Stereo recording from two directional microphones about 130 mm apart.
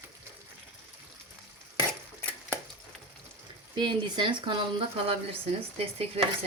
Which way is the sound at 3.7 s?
35° right (ahead or behind).